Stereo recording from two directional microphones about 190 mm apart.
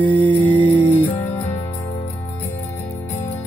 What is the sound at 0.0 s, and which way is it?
Music, 25° right (ahead or behind).